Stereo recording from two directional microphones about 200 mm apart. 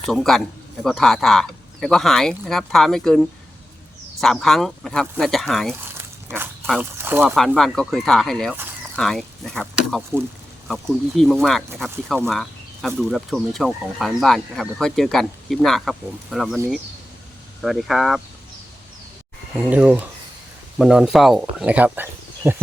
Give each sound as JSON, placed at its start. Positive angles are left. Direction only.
{"t": 0.1, "sound": "speech", "side_deg": 0}
{"t": 6.2, "sound": "dog", "side_deg": -10}
{"t": 6.7, "sound": "speech", "side_deg": -5}
{"t": 7.3, "sound": "speech", "side_deg": 0}
{"t": 11.2, "sound": "speech", "side_deg": 0}
{"t": 12.3, "sound": "a sound", "side_deg": 0}
{"t": 13.0, "sound": "speech", "side_deg": 0}
{"t": 17.6, "sound": "speech", "side_deg": 0}
{"t": 19.5, "sound": "speech", "side_deg": -5}